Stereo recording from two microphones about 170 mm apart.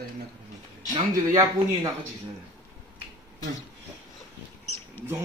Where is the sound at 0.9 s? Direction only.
25° right (ahead or behind).